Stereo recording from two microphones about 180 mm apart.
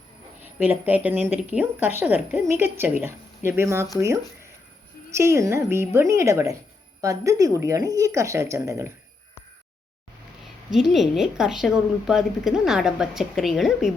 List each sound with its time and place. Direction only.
0.4 s a woman's voice: 10° right (ahead or behind)
5.1 s a woman's voice: 15° right (ahead or behind)
10.7 s a woman's voice: centre (ahead or behind)